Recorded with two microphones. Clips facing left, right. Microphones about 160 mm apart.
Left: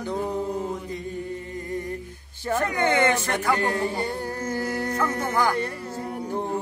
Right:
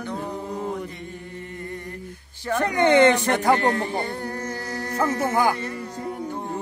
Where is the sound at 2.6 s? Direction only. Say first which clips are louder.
Right 6 dB; 20° right (ahead or behind).